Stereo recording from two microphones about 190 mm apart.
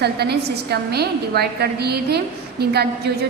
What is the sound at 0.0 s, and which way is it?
A woman's voice, 60° right (ahead or behind).